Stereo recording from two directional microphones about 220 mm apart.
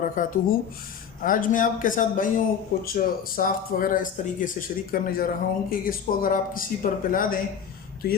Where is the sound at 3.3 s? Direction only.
40° left (ahead or behind).